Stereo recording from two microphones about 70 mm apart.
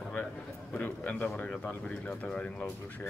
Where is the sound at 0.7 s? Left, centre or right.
Left.